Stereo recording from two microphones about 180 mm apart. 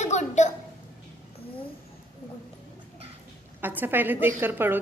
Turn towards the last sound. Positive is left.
turn(degrees=-10)  # may be behind; listen again after turning